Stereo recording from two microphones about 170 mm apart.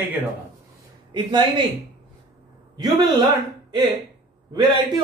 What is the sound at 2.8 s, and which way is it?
A man's voice, 25° right (ahead or behind).